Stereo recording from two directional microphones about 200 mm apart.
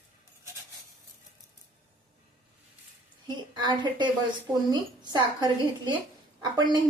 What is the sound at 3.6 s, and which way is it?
A woman's voice, 20° right (ahead or behind).